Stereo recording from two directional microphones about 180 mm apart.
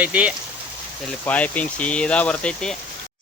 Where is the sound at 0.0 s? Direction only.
5° right (ahead or behind).